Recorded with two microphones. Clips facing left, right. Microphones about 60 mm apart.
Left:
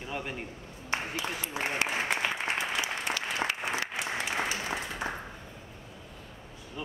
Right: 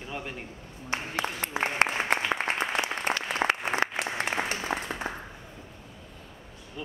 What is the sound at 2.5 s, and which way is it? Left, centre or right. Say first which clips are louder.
Applause: right 3 dB; right.